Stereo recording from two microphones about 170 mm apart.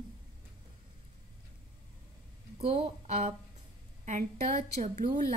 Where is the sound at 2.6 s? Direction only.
40° right (ahead or behind).